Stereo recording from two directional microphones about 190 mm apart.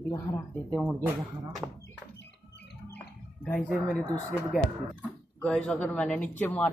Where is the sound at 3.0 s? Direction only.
5° left (ahead or behind).